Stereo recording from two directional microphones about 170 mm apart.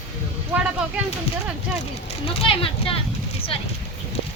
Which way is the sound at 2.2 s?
35° left (ahead or behind).